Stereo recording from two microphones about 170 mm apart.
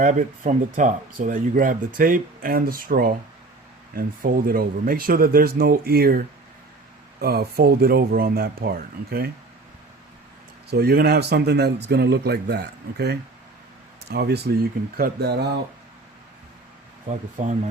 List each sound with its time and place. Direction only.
0.0 s speech: 50° right (ahead or behind); by 9.3 s 65° right (ahead or behind)
10.7 s speech: 70° right (ahead or behind)